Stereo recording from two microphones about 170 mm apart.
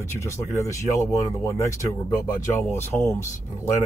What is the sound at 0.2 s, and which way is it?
Speech, 15° left (ahead or behind).